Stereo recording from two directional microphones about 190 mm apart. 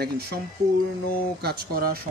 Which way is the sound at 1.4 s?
55° right (ahead or behind).